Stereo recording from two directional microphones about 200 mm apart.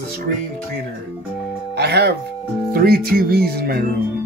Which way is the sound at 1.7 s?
55° right (ahead or behind).